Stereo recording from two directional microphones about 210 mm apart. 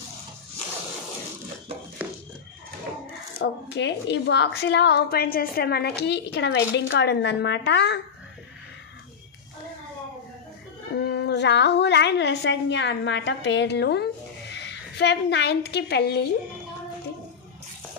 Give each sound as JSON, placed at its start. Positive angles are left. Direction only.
{"t": 3.4, "sound": "a woman's voice", "side_deg": 60}
{"t": 11.0, "sound": "a woman's voice", "side_deg": 50}